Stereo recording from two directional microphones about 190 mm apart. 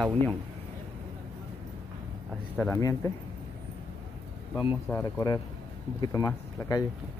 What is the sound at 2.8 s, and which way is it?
Speech, 15° left (ahead or behind).